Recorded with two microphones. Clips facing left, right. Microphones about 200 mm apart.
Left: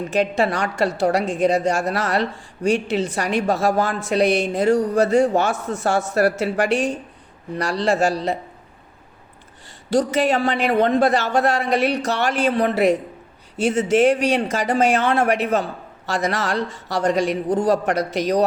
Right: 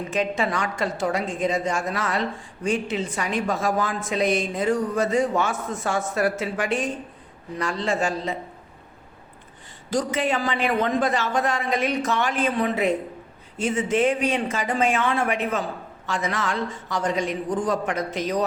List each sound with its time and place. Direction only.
0.1 s speech: 70° left (ahead or behind)
10.2 s a man's voice: 70° left (ahead or behind)